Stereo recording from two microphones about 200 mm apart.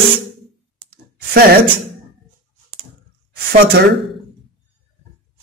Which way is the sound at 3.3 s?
50° right (ahead or behind).